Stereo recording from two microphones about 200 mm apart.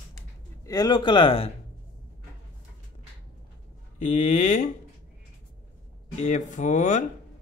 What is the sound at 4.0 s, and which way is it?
Speech, 40° left (ahead or behind).